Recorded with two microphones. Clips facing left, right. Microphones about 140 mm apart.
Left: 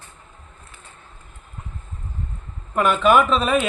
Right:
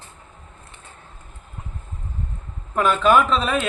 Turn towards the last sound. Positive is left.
turn(degrees=5)  # may be behind; listen again after turning